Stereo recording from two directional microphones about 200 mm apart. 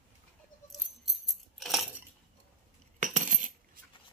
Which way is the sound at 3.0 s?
40° right (ahead or behind).